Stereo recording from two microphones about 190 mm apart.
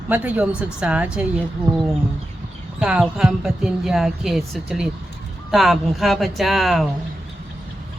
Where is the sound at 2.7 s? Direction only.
5° right (ahead or behind).